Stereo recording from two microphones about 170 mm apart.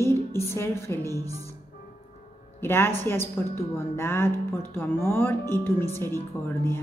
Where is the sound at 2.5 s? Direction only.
15° left (ahead or behind).